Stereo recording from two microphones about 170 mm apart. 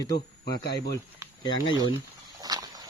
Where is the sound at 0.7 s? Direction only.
25° left (ahead or behind).